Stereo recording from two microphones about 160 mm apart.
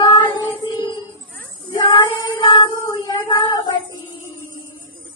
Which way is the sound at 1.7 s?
30° left (ahead or behind).